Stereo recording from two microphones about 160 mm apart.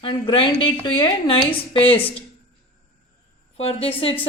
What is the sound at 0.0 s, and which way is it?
A woman's voice, 30° left (ahead or behind).